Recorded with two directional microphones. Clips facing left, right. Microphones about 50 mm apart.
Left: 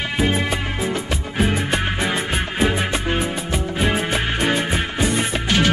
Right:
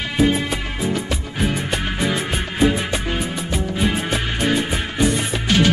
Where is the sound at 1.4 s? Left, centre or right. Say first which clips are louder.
Left 2 dB; centre.